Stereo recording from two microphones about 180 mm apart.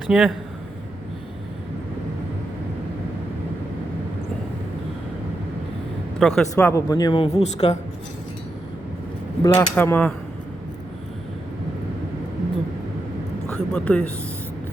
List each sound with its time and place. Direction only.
0.1 s a man's voice: 5° right (ahead or behind)
6.1 s a man's voice: centre (ahead or behind)
6.7 s a man's voice: 20° left (ahead or behind); by 7.8 s 35° left (ahead or behind)
9.4 s speech: 20° left (ahead or behind)
13.5 s a sound: 5° left (ahead or behind)